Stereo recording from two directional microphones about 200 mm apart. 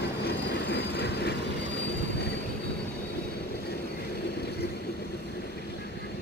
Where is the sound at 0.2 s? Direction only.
55° left (ahead or behind).